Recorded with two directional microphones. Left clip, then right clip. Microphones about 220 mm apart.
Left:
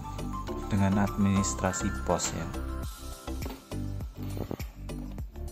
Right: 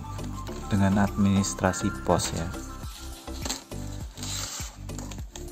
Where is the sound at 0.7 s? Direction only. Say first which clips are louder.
Right 4 dB; 15° right (ahead or behind).